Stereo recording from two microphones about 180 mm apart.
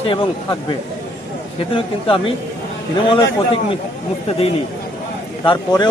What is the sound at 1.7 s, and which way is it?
Speech, 30° left (ahead or behind).